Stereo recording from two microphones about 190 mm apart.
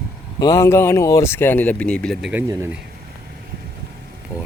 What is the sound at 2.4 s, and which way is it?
Speech, 15° right (ahead or behind).